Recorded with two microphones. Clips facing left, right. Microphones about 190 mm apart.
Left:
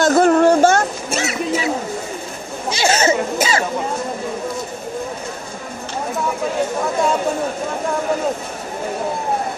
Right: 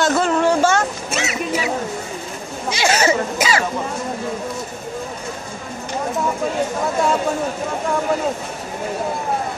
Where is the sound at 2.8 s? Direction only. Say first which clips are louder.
Left 1 dB; 25° left (ahead or behind).